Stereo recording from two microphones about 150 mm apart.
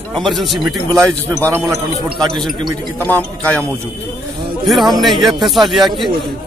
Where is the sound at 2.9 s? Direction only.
10° left (ahead or behind).